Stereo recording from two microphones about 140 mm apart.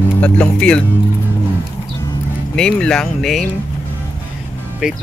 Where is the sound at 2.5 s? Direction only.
5° left (ahead or behind).